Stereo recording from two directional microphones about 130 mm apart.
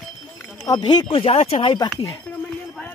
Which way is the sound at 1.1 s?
45° left (ahead or behind).